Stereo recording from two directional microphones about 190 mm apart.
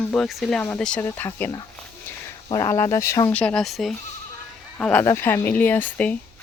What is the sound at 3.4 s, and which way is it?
Speech, 5° left (ahead or behind).